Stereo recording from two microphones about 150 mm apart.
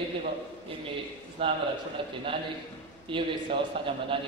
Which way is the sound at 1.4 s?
35° right (ahead or behind).